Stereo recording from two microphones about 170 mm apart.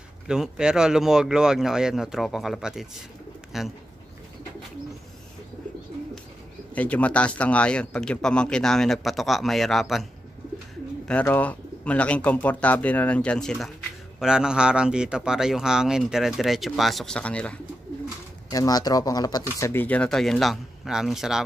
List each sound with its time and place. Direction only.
0.3 s a man's voice: 5° right (ahead or behind)
6.7 s a man's voice: 10° left (ahead or behind)
11.1 s a man's voice: 10° left (ahead or behind)
18.5 s speech: 20° left (ahead or behind)
19.6 s a man's voice: 10° left (ahead or behind)